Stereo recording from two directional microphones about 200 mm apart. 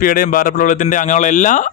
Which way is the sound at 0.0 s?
45° left (ahead or behind).